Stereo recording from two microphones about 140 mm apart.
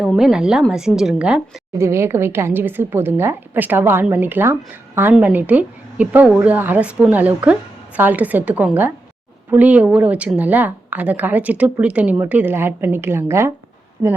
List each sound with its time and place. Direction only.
0.0 s a woman's voice: 5° right (ahead or behind)
1.8 s speech: 20° right (ahead or behind)